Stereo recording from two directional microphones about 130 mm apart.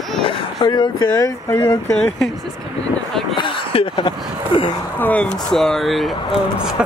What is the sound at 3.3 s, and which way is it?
Speech, 40° left (ahead or behind).